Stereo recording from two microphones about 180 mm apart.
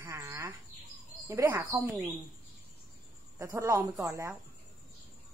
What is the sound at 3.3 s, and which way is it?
A woman's voice, 15° right (ahead or behind).